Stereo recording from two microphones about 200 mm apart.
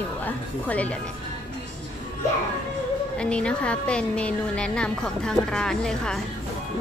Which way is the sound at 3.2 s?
5° left (ahead or behind).